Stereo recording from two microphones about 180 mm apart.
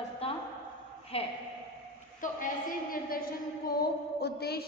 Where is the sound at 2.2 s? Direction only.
50° left (ahead or behind).